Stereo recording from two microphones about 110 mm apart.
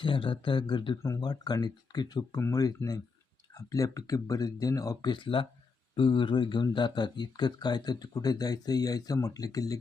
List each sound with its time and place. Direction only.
0.0 s speech: 50° left (ahead or behind)
1.0 s speech: 35° left (ahead or behind)